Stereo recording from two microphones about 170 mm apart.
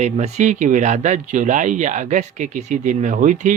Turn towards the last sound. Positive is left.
turn(degrees=-50)  # may be behind; listen again after turning